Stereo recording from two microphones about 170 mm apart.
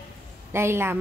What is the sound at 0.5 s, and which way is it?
Speech, 15° right (ahead or behind).